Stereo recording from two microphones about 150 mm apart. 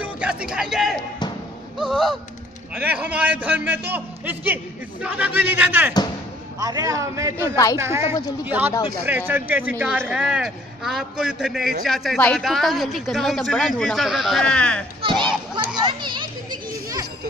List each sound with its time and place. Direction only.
0.0 s a man's voice: 10° right (ahead or behind)
6.6 s a man's voice: 25° right (ahead or behind); by 14.9 s 5° left (ahead or behind)
15.0 s children playing: 30° right (ahead or behind)